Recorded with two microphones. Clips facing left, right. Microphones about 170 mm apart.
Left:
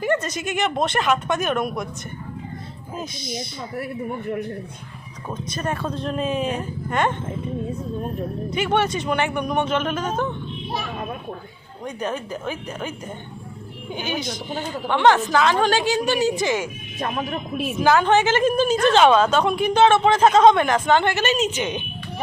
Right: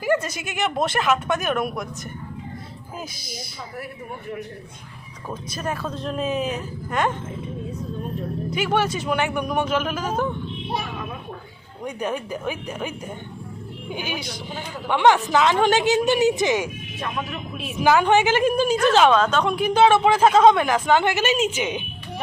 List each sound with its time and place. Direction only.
0.0 s speech: 10° right (ahead or behind)
5.3 s speech: 5° right (ahead or behind)
8.4 s speech: centre (ahead or behind)
11.9 s speech: 10° right (ahead or behind)
13.9 s a woman's voice: 10° right (ahead or behind)
17.0 s speech: 40° left (ahead or behind)
17.8 s speech: 15° right (ahead or behind); by 19.5 s 10° left (ahead or behind)
19.5 s speech: 5° right (ahead or behind)